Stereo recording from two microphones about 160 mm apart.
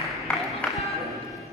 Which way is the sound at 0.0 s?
Centre (ahead or behind).